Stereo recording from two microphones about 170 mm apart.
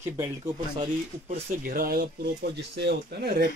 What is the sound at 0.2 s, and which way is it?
Speech, 20° right (ahead or behind).